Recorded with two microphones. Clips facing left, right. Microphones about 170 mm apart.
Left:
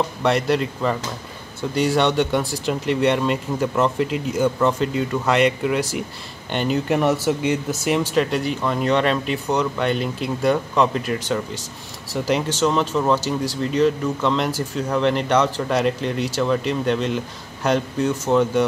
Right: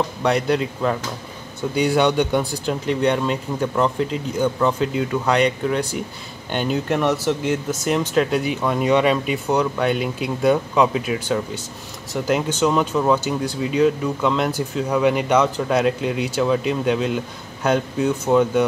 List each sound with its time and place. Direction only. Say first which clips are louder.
0.2 s speech: even; centre (ahead or behind)